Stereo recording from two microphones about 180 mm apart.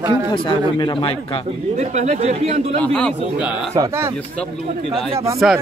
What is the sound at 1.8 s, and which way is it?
Speech, 40° right (ahead or behind).